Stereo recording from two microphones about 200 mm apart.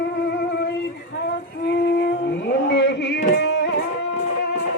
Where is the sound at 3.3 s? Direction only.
55° left (ahead or behind).